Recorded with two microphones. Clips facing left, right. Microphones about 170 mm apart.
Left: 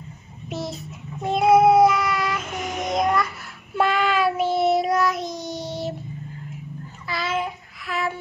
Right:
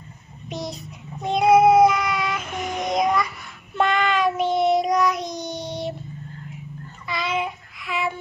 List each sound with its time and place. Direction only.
0.5 s child singing: centre (ahead or behind)
7.1 s child singing: centre (ahead or behind)